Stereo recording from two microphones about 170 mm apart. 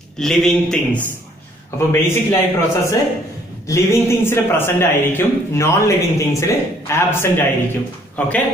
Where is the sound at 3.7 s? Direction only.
15° left (ahead or behind).